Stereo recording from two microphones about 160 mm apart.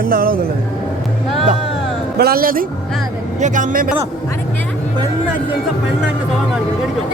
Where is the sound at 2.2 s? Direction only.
70° right (ahead or behind).